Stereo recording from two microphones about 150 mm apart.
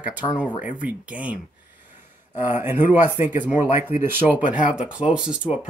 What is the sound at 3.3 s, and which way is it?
Speech, 50° left (ahead or behind).